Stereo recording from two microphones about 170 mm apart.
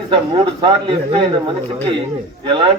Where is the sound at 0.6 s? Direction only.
30° right (ahead or behind).